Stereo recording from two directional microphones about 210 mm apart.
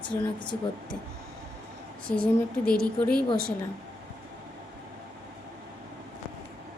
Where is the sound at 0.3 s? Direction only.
20° left (ahead or behind).